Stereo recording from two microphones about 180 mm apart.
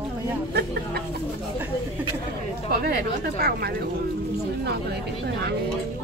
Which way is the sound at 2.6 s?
55° right (ahead or behind).